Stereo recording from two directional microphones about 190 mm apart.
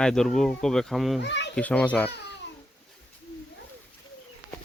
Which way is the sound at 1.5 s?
5° left (ahead or behind).